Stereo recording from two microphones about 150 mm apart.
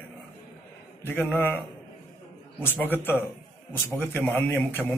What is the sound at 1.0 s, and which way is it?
Speech, 10° left (ahead or behind).